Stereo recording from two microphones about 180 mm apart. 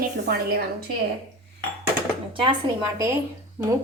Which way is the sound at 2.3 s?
30° right (ahead or behind).